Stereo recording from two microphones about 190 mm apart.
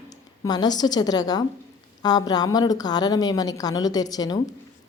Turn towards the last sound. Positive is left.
turn(degrees=20)  # may be behind; listen again after turning